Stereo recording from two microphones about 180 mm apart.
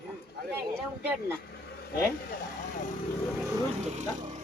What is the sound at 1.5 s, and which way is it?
Vehicle, 60° left (ahead or behind).